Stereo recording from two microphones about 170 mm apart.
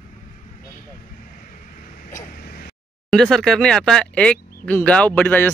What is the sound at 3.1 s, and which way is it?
Speech, centre (ahead or behind).